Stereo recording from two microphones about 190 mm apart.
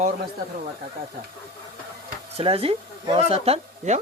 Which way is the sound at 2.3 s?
30° right (ahead or behind).